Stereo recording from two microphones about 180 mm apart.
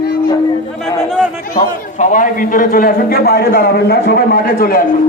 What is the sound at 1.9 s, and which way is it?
A man's voice, 45° left (ahead or behind).